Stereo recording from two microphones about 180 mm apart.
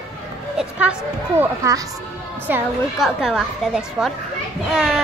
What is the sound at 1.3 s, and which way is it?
A woman's voice, 15° right (ahead or behind).